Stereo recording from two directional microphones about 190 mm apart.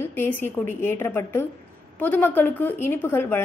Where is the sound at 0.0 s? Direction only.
10° left (ahead or behind).